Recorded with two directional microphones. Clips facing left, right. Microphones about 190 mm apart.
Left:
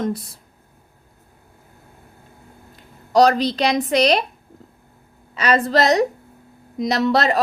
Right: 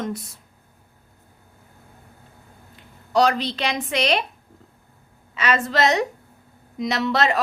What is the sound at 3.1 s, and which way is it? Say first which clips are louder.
A woman's voice: left 5 dB; 40° left (ahead or behind).